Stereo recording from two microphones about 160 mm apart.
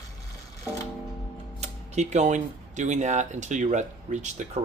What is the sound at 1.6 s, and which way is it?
Speech, 45° right (ahead or behind).